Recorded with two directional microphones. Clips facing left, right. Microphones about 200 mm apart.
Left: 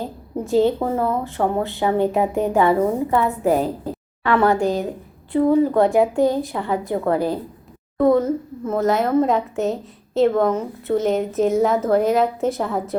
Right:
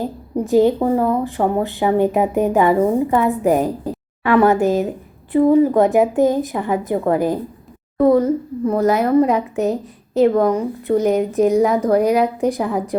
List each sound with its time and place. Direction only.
0.0 s a woman's voice: 15° right (ahead or behind)
7.9 s a woman's voice: centre (ahead or behind)
10.2 s a woman's voice: 15° right (ahead or behind)
11.3 s a woman's voice: centre (ahead or behind)
11.7 s a woman's voice: 15° right (ahead or behind)